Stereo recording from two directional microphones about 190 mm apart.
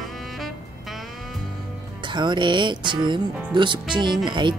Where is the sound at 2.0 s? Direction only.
25° right (ahead or behind).